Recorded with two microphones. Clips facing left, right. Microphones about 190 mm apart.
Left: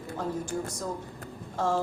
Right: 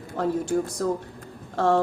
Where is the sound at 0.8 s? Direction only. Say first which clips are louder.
Right 8 dB; 75° right (ahead or behind).